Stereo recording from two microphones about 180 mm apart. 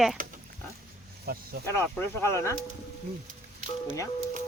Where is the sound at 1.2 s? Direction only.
55° right (ahead or behind).